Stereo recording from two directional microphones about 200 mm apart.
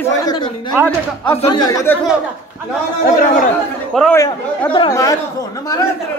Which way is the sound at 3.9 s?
Centre (ahead or behind).